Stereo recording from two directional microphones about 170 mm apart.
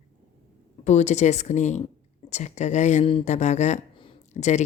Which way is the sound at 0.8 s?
40° left (ahead or behind).